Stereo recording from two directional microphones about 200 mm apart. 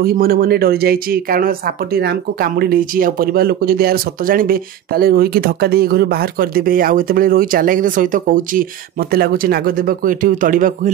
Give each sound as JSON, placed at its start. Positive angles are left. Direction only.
{"t": 0.0, "sound": "speech", "side_deg": -50}